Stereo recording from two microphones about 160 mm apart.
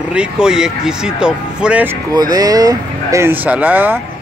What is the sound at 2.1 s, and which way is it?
Speech, 25° right (ahead or behind).